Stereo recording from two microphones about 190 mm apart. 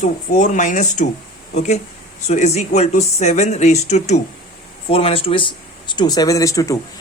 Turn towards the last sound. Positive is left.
turn(degrees=15)  # may be behind; listen again after turning